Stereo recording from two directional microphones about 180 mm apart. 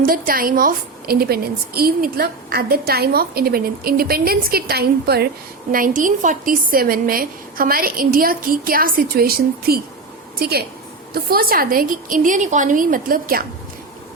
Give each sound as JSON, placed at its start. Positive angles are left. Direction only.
{"t": 0.0, "sound": "a woman's voice", "side_deg": -50}
{"t": 5.7, "sound": "a woman's voice", "side_deg": -50}
{"t": 11.1, "sound": "a woman's voice", "side_deg": -55}